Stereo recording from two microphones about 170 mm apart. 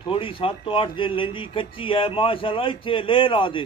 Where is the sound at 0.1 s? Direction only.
30° left (ahead or behind).